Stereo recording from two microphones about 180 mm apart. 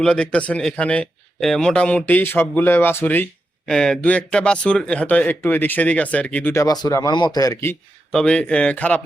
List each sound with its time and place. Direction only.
0.0 s a man's voice: 5° left (ahead or behind)
8.1 s speech: 5° left (ahead or behind)